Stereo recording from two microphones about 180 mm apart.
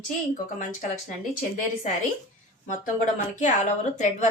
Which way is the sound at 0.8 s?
45° left (ahead or behind).